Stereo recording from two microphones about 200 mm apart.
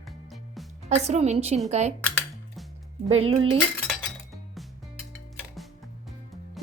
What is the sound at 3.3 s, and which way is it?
Speech, 25° right (ahead or behind).